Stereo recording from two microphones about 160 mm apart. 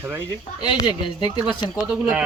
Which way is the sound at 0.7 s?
25° left (ahead or behind).